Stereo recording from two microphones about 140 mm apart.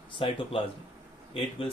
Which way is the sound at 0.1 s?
40° left (ahead or behind).